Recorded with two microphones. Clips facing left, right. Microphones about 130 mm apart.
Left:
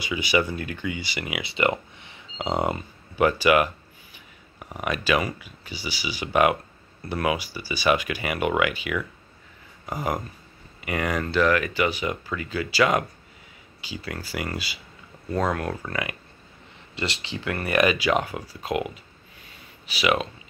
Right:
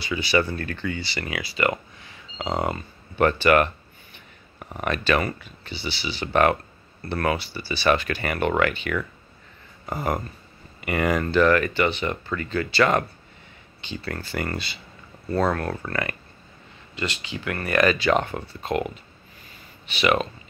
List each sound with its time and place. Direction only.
0.0 s speech: 15° left (ahead or behind)
3.2 s speech: 5° left (ahead or behind)
16.9 s speech: 25° left (ahead or behind); by 18.9 s 5° left (ahead or behind)
19.4 s a sound: centre (ahead or behind)